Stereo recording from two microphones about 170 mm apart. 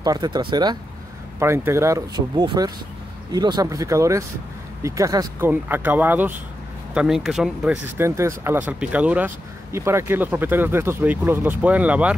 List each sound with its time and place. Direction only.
0.0 s speech: 25° right (ahead or behind)
1.4 s speech: 15° right (ahead or behind)